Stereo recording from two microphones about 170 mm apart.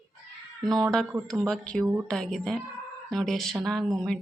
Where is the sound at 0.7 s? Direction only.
Centre (ahead or behind).